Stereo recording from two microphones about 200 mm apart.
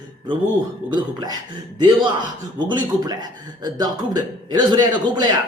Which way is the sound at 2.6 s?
20° right (ahead or behind).